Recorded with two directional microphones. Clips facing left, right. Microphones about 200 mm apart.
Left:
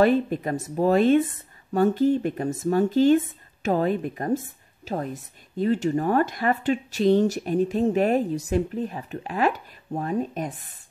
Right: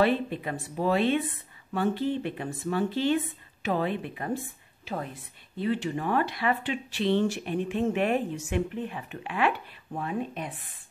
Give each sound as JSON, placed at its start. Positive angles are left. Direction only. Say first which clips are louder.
{"t": 0.0, "sound": "speech", "louder": "left 5 dB", "side_deg": 45}